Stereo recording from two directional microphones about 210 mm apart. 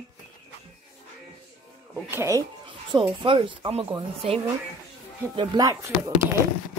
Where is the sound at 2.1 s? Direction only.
10° right (ahead or behind).